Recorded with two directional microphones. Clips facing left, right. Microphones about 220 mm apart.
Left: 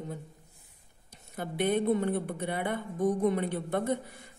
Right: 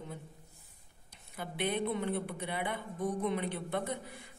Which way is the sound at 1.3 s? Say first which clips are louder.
Left 6 dB; 45° left (ahead or behind).